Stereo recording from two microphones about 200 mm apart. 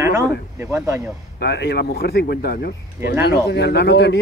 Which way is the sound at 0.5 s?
15° right (ahead or behind).